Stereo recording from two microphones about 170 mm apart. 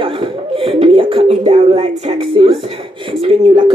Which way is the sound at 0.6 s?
35° right (ahead or behind).